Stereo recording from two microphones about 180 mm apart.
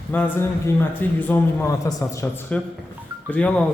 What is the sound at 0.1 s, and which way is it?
A man's voice, 10° left (ahead or behind).